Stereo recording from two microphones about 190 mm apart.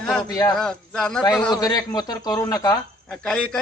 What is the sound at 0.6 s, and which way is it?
Speech, 5° left (ahead or behind).